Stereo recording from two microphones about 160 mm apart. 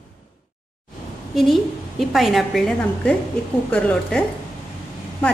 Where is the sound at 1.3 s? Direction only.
Centre (ahead or behind).